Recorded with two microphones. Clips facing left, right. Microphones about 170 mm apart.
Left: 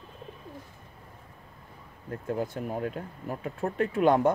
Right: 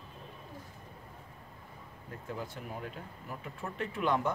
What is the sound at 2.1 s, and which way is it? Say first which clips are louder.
Speech: left 10 dB; 50° left (ahead or behind).